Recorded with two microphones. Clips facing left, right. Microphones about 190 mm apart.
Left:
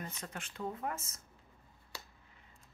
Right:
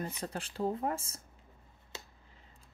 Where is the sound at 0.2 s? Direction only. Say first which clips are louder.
Right 8 dB; 35° right (ahead or behind).